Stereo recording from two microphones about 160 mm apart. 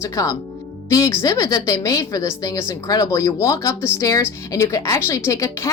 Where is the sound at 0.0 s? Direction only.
20° left (ahead or behind).